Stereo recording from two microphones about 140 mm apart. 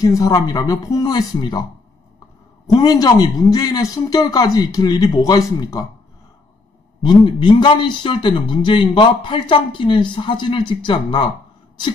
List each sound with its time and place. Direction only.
0.0 s a man's voice: 25° left (ahead or behind)
7.0 s a man's voice: 35° left (ahead or behind)